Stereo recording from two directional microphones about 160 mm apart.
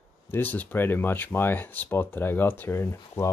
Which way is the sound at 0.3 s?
10° left (ahead or behind).